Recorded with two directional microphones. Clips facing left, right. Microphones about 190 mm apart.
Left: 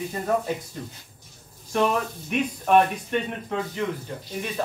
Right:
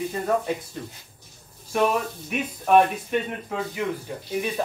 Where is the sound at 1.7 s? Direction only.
5° right (ahead or behind).